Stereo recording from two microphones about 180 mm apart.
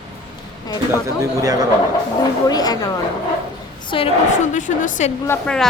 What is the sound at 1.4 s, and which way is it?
Speech, 20° right (ahead or behind).